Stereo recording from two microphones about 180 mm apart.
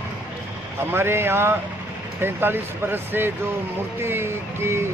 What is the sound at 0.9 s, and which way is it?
Speech, 15° right (ahead or behind).